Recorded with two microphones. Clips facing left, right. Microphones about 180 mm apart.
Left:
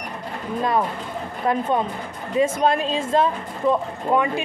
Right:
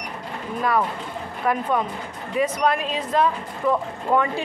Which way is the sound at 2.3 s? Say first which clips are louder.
Left 2 dB; 25° left (ahead or behind).